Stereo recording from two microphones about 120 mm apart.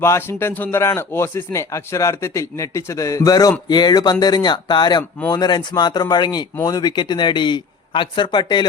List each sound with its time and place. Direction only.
0.0 s speech: 20° left (ahead or behind); by 8.6 s 40° left (ahead or behind)